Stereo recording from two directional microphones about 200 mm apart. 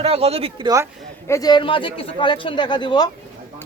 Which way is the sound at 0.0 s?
30° right (ahead or behind).